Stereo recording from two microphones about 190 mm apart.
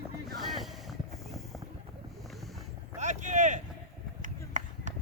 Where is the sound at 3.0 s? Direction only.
40° right (ahead or behind).